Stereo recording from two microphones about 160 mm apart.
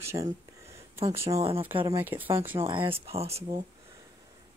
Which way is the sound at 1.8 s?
15° right (ahead or behind).